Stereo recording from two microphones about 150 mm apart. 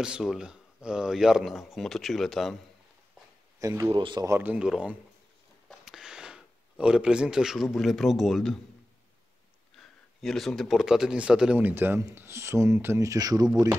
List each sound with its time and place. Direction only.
0.0 s speech: 5° right (ahead or behind)
3.5 s speech: 20° right (ahead or behind)
3.9 s speech: 30° right (ahead or behind)
4.3 s a man's voice: 10° right (ahead or behind)
9.8 s a man's voice: centre (ahead or behind); by 13.5 s 25° right (ahead or behind)